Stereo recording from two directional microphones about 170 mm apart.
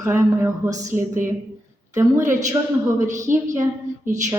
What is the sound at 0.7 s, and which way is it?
Speech, 45° right (ahead or behind).